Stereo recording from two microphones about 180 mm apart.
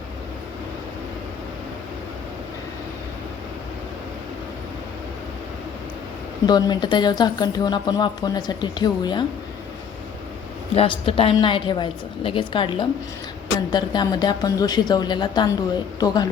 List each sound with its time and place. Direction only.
6.4 s speech: 25° left (ahead or behind)
10.8 s speech: 30° left (ahead or behind)